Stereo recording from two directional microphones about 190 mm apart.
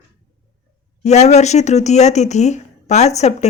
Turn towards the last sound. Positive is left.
turn(degrees=35)  # may be behind; listen again after turning